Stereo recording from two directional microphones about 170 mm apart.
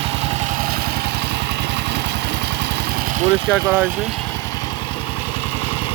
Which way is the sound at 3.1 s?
50° right (ahead or behind).